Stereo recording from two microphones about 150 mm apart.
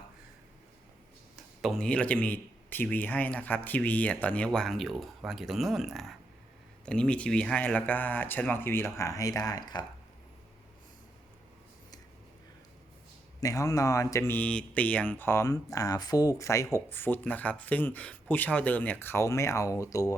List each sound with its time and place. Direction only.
1.6 s a man's voice: 5° left (ahead or behind); by 9.8 s 25° left (ahead or behind)
13.4 s a man's voice: 20° left (ahead or behind)